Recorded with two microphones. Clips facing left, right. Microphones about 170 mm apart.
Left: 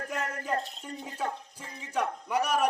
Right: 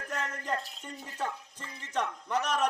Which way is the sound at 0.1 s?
10° left (ahead or behind).